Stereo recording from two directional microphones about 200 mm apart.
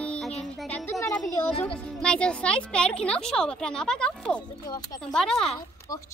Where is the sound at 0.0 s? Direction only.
5° left (ahead or behind).